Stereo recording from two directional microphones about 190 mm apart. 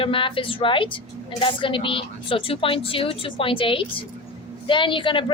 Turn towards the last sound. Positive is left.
turn(degrees=25)  # may be behind; listen again after turning